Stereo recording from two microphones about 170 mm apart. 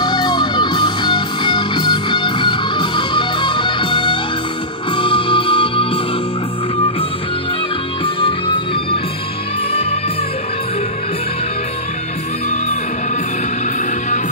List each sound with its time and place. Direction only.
0.0 s music: 25° left (ahead or behind)
8.0 s music: 30° left (ahead or behind)